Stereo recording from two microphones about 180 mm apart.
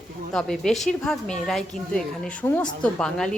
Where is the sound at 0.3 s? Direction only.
5° left (ahead or behind).